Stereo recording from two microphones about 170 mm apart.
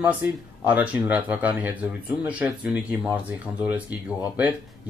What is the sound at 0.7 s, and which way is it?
Speech, 10° right (ahead or behind).